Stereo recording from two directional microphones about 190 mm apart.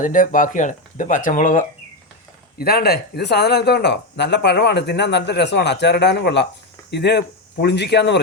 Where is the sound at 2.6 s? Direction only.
55° left (ahead or behind).